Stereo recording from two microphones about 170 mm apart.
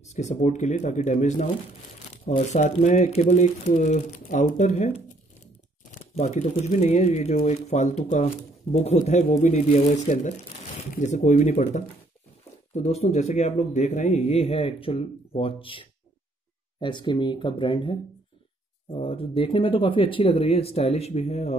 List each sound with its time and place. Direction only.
0.1 s a man's voice: 40° left (ahead or behind)